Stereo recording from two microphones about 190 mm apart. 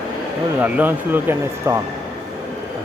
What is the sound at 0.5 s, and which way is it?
Speech, 10° right (ahead or behind).